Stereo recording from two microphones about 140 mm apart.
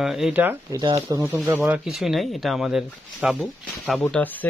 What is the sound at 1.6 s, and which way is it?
Speech, 5° right (ahead or behind).